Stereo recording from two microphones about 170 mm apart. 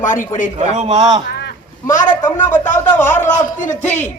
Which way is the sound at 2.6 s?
45° left (ahead or behind).